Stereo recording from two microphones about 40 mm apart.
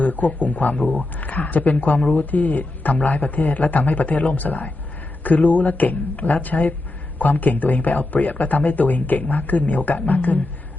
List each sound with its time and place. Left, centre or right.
0.0 s a man's voice: left